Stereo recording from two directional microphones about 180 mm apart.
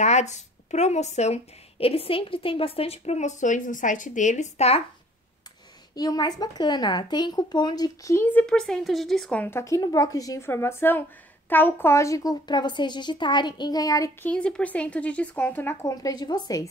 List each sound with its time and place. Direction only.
0.0 s speech: 40° left (ahead or behind)
5.9 s speech: 20° left (ahead or behind)
14.3 s speech: 5° left (ahead or behind); by 16.6 s 20° left (ahead or behind)